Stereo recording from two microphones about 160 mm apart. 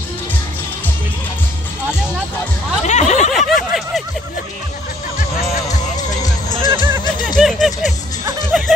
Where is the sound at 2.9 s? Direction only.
45° left (ahead or behind).